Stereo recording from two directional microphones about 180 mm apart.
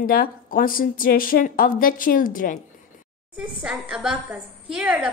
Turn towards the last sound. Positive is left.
turn(degrees=-5)  # may be behind; listen again after turning